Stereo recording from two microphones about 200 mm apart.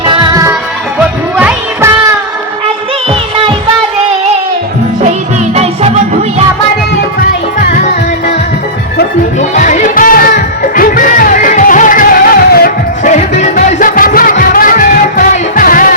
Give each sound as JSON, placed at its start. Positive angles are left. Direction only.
{"t": 0.0, "sound": "music", "side_deg": -20}
{"t": 1.4, "sound": "music", "side_deg": -10}
{"t": 9.6, "sound": "music", "side_deg": 40}